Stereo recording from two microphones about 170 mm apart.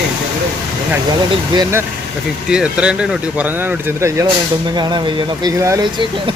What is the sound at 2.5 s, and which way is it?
Speech, 5° right (ahead or behind).